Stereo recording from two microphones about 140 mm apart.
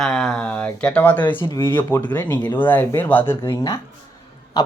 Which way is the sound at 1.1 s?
35° left (ahead or behind).